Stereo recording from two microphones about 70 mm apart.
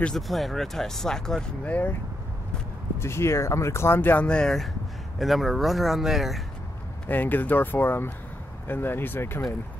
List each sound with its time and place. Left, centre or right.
0.1 s speech: centre
1.6 s speech: left
3.0 s speech: left
4.3 s speech: centre
5.2 s speech: centre
7.1 s speech: left